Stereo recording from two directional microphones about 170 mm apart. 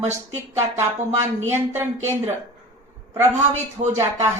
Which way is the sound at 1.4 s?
15° right (ahead or behind).